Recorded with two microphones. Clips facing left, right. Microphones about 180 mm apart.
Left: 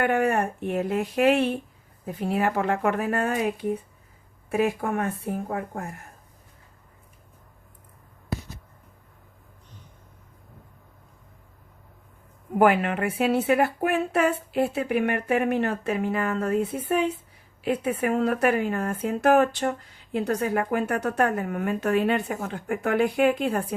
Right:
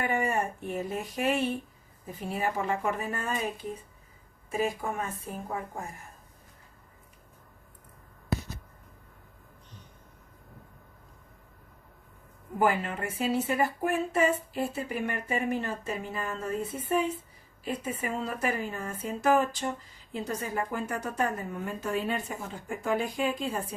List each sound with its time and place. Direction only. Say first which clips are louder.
0.0 s a woman's voice: left 6 dB; 65° left (ahead or behind)
12.5 s speech: left 7 dB; 70° left (ahead or behind)